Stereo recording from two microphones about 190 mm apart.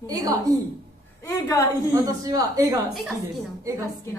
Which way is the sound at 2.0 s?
20° right (ahead or behind).